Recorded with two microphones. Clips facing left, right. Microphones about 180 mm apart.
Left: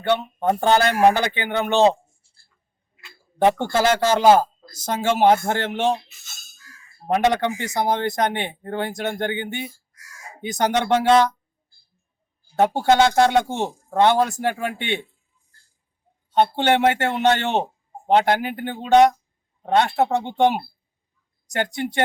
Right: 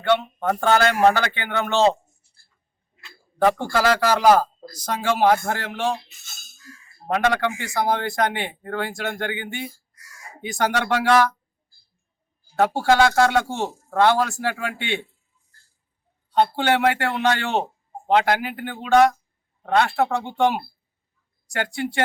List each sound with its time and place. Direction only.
0.4 s a man's voice: 25° left (ahead or behind)
2.2 s a sound: 30° left (ahead or behind)
3.3 s a man's voice: 25° left (ahead or behind)
7.1 s a man's voice: 20° left (ahead or behind)
10.6 s a man's voice: 20° left (ahead or behind)
12.5 s a man's voice: 20° left (ahead or behind)
16.3 s a man's voice: 20° left (ahead or behind)